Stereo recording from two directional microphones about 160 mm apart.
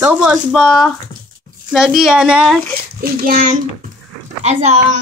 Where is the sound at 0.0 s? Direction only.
10° right (ahead or behind).